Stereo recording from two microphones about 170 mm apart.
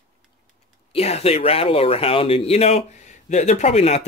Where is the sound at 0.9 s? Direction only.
35° left (ahead or behind).